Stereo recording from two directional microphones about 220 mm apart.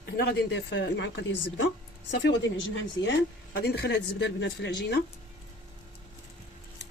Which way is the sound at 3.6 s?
50° left (ahead or behind).